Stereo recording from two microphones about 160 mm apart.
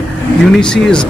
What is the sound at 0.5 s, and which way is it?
Speech, 5° left (ahead or behind).